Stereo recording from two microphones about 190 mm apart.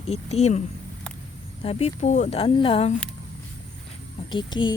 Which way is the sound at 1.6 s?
35° left (ahead or behind).